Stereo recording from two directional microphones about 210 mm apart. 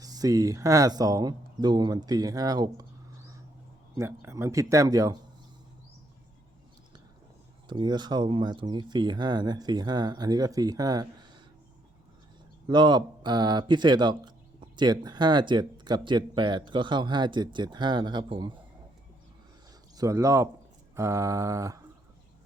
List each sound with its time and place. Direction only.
0.0 s speech: 15° right (ahead or behind)
3.9 s speech: 15° right (ahead or behind)
7.7 s speech: 20° right (ahead or behind)
12.6 s speech: 20° right (ahead or behind)
20.0 s speech: 15° right (ahead or behind)